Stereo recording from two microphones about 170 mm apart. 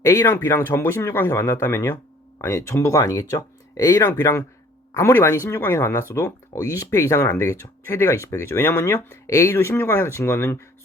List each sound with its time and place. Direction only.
0.0 s speech: 15° left (ahead or behind)